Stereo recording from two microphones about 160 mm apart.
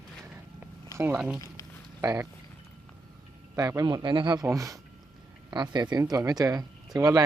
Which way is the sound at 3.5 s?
25° right (ahead or behind).